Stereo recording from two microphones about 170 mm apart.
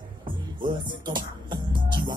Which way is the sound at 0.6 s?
25° right (ahead or behind).